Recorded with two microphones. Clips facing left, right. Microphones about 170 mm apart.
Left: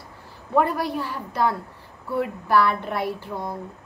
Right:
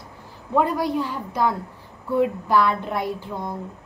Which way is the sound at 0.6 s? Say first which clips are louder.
Right 1 dB; 15° right (ahead or behind).